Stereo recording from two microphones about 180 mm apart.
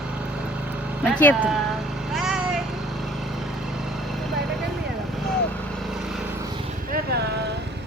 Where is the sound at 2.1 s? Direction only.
5° right (ahead or behind).